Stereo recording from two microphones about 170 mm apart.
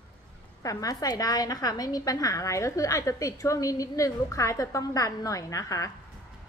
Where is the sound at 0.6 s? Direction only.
20° left (ahead or behind).